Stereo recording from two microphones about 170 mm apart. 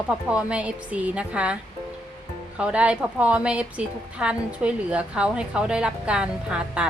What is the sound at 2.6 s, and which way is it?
A woman's voice, 5° right (ahead or behind).